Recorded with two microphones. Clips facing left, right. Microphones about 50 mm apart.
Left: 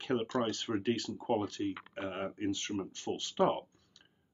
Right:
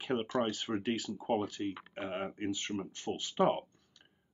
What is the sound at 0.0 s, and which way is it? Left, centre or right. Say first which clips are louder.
Speech: even; centre.